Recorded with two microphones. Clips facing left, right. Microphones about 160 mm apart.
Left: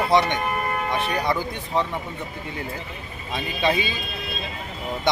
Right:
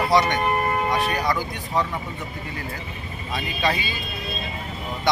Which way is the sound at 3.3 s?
20° left (ahead or behind).